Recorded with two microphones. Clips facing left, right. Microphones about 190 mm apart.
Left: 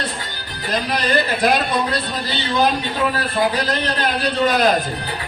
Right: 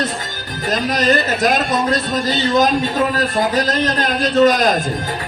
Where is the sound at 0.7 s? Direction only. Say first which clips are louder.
Right 4 dB; 45° right (ahead or behind).